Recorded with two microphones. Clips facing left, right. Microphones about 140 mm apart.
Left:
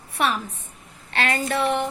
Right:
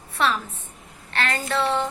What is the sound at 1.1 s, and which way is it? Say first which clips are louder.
Speech: left 2 dB; 15° left (ahead or behind).